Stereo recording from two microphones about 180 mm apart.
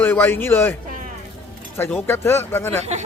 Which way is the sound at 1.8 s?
10° left (ahead or behind).